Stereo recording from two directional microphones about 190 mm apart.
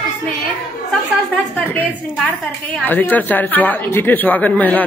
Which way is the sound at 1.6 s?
10° left (ahead or behind).